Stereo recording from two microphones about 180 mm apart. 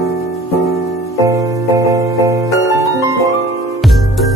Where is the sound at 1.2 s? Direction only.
15° right (ahead or behind).